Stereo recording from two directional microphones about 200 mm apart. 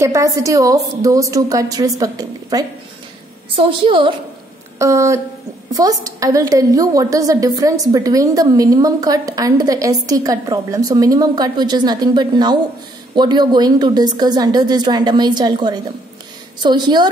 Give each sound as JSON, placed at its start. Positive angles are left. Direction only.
{"t": 0.0, "sound": "a woman's voice", "side_deg": -15}